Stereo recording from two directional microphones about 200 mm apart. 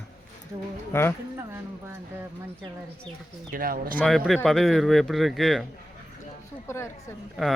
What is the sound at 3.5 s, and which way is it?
Speech, 45° right (ahead or behind).